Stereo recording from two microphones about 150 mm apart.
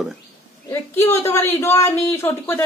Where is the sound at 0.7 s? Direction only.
15° left (ahead or behind).